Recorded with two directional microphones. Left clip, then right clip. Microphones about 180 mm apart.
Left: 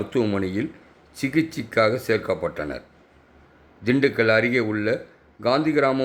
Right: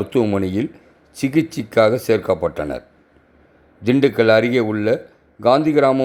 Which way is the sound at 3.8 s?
25° right (ahead or behind).